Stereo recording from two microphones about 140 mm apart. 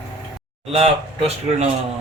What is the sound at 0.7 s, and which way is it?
Speech, 45° right (ahead or behind).